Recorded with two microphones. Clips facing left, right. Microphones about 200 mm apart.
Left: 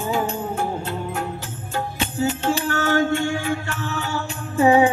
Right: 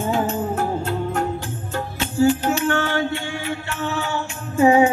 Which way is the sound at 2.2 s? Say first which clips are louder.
Right 5 dB; 20° left (ahead or behind).